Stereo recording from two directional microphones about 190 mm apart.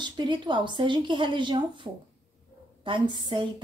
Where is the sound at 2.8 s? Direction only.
25° right (ahead or behind).